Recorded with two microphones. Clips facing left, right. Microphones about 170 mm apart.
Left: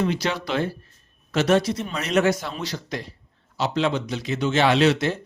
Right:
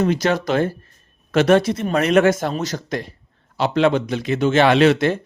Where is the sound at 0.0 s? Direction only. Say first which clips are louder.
Right 6 dB; 45° right (ahead or behind).